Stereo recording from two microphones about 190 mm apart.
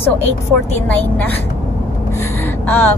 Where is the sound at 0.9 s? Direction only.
10° left (ahead or behind).